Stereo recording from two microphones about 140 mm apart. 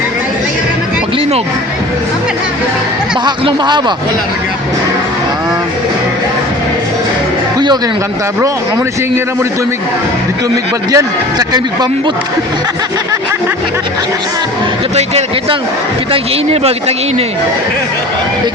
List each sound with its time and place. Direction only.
3.2 s speech: 30° right (ahead or behind)
10.9 s speech: 30° right (ahead or behind)
14.9 s a man's voice: 50° right (ahead or behind)